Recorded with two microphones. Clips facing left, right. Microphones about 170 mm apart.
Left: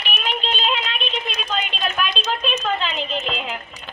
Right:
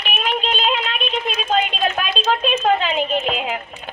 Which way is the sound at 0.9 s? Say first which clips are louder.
Right 4 dB; 50° right (ahead or behind).